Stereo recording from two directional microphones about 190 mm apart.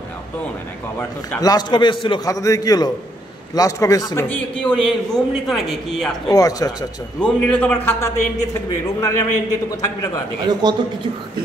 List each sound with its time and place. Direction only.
0.9 s a man's voice: 15° left (ahead or behind)
4.3 s a man's voice: 5° left (ahead or behind)
6.3 s a man's voice: 20° left (ahead or behind)
7.2 s a man's voice: 5° left (ahead or behind)
10.4 s speech: 20° right (ahead or behind)